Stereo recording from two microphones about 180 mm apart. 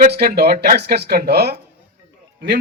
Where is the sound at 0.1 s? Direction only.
60° right (ahead or behind).